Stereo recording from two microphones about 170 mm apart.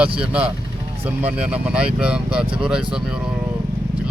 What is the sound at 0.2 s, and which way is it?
Speech, 5° right (ahead or behind).